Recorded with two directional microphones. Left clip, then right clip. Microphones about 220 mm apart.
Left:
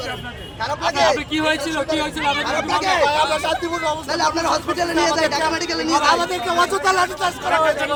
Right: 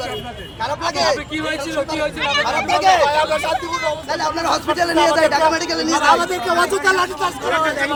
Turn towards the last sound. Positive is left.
turn(degrees=0)  # may be behind; listen again after turning